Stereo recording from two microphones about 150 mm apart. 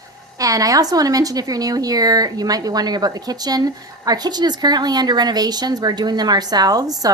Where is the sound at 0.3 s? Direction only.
25° right (ahead or behind).